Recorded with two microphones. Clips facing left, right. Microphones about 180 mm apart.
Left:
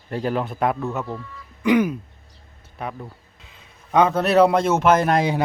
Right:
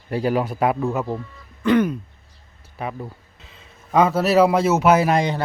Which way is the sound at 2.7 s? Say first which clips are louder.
Right 2 dB; 5° right (ahead or behind).